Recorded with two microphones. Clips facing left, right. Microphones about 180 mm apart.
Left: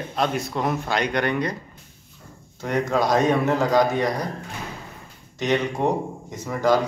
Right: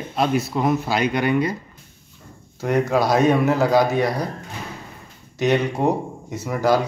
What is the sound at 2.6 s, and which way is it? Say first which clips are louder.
A man's voice: right 3 dB; 10° right (ahead or behind).